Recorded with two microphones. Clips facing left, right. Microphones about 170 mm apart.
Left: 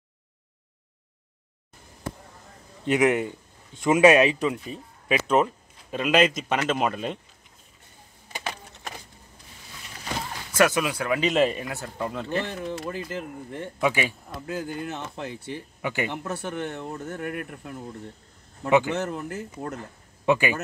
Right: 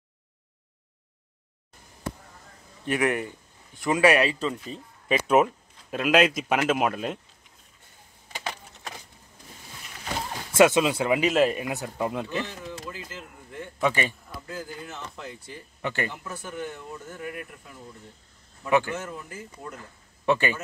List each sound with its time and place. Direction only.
2.8 s a man's voice: 20° left (ahead or behind)
5.3 s speech: 5° right (ahead or behind)
10.5 s speech: 25° right (ahead or behind)
11.1 s speech: 5° right (ahead or behind)
11.6 s speech: 15° right (ahead or behind)
12.4 s speech: 55° left (ahead or behind)
13.7 s speech: 5° left (ahead or behind)
14.4 s speech: 65° left (ahead or behind)
15.8 s speech: 15° left (ahead or behind)
16.1 s speech: 65° left (ahead or behind)
18.7 s speech: 20° left (ahead or behind)
18.9 s speech: 65° left (ahead or behind)
20.2 s speech: 10° left (ahead or behind)